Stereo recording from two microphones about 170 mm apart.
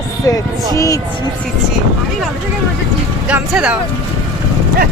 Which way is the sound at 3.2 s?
5° right (ahead or behind).